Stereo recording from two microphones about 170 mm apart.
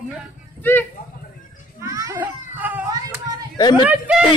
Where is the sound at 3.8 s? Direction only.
5° right (ahead or behind).